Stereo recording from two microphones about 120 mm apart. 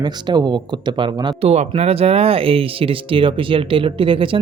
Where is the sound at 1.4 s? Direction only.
55° right (ahead or behind).